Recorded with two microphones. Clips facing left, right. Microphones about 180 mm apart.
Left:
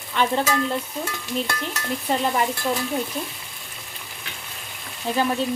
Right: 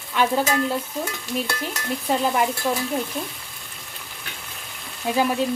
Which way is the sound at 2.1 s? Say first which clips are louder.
Right 1 dB; 5° right (ahead or behind).